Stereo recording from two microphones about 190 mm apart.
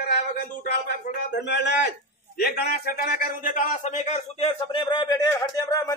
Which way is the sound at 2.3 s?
55° left (ahead or behind).